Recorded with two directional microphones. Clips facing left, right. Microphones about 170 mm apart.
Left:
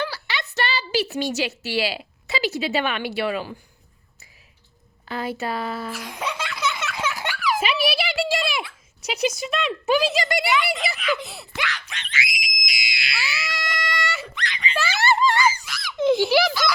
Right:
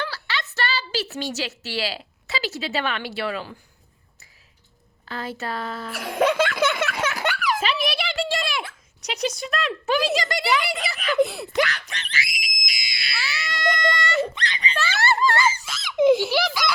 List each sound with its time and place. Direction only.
0.0 s a woman's voice: 15° left (ahead or behind)
5.0 s speech: 15° left (ahead or behind)
5.9 s speech: 60° right (ahead or behind)
7.6 s a sound: 10° left (ahead or behind)
9.0 s speech: 5° left (ahead or behind)
10.9 s speech: 50° right (ahead or behind)
12.6 s screaming: 35° right (ahead or behind)
13.1 s screaming: 10° left (ahead or behind)
14.3 s speech: 35° right (ahead or behind)
14.8 s a sound: 15° left (ahead or behind)
15.4 s giggle: 25° right (ahead or behind)